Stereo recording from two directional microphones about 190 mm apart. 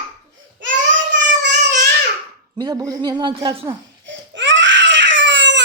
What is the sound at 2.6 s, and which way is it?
A man's voice, 20° right (ahead or behind).